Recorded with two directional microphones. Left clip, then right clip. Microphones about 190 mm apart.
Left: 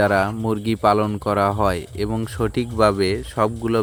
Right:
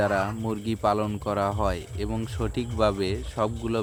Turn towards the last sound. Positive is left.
turn(degrees=20)  # may be behind; listen again after turning